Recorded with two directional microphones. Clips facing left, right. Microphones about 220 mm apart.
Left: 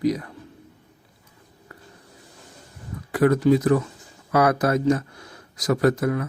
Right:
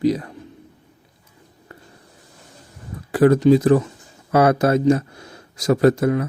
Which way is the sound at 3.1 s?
30° right (ahead or behind).